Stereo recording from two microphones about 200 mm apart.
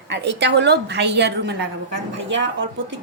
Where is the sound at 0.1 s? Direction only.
60° right (ahead or behind).